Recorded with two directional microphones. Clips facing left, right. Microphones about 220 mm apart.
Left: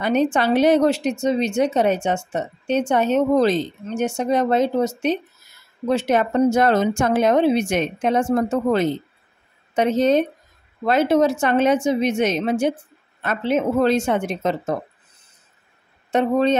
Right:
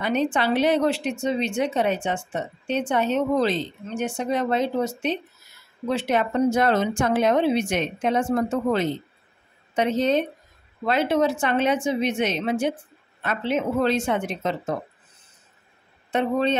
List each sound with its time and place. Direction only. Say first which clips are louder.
0.0 s a woman's voice: left 4 dB; 45° left (ahead or behind)
16.1 s a woman's voice: left 4 dB; 45° left (ahead or behind)